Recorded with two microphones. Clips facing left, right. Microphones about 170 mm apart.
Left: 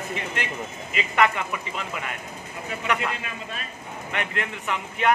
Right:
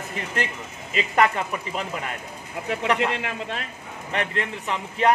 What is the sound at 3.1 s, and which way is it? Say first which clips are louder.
Speech: right 5 dB; 80° right.